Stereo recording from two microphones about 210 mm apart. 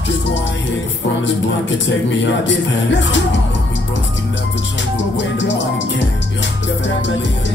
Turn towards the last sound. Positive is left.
turn(degrees=60)  # may be behind; listen again after turning